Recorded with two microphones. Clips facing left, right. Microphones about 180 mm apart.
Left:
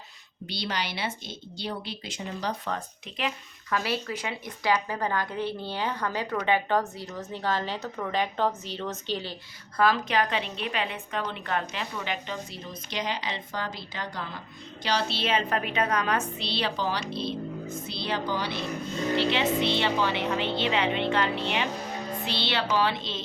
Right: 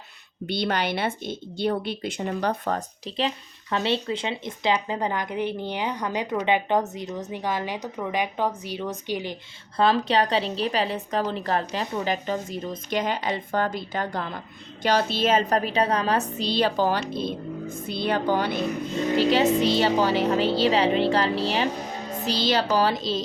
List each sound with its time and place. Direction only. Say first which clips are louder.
0.4 s a woman's voice: right 7 dB; 55° right (ahead or behind)
2.7 s a woman's voice: right 7 dB; 30° right (ahead or behind); by 9.4 s 15° right (ahead or behind)
9.7 s a woman's voice: right 3 dB; 30° right (ahead or behind); by 18.6 s 50° right (ahead or behind)
19.1 s a woman's voice: right 6 dB; 40° right (ahead or behind)
22.2 s music: right 8 dB; 40° right (ahead or behind)
22.7 s a woman's voice: right 4 dB; 40° right (ahead or behind)